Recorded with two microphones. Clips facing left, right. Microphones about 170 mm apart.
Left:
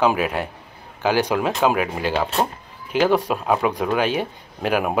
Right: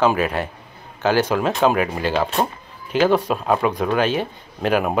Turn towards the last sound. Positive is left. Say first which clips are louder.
# right 2 dB
turn(degrees=10)  # may be behind; listen again after turning